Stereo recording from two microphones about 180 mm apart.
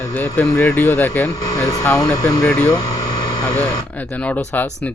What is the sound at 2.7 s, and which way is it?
Vehicle, 20° left (ahead or behind).